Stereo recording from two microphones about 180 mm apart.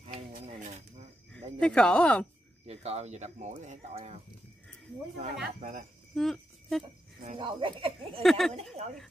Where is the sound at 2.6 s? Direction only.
35° right (ahead or behind).